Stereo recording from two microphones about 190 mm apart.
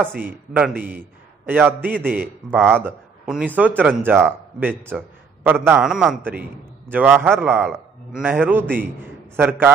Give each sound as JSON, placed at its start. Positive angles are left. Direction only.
{"t": 0.0, "sound": "a man's voice", "side_deg": -10}